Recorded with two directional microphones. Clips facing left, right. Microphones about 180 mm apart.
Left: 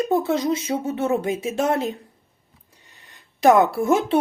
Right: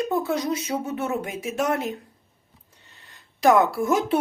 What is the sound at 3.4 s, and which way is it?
Speech, 25° left (ahead or behind).